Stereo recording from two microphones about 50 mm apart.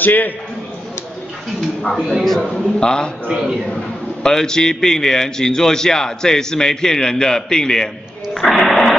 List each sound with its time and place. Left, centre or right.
0.0 s a man's voice: left
1.8 s a man's voice: centre
2.5 s a man's voice: centre
3.3 s a man's voice: centre
4.2 s a man's voice: centre